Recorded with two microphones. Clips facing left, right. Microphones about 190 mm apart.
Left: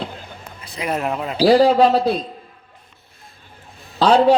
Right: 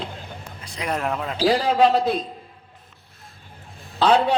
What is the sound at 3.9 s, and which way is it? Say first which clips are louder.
Speech: left 5 dB; 40° left (ahead or behind).